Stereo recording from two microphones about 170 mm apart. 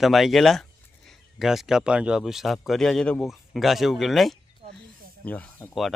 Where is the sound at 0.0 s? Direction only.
Centre (ahead or behind).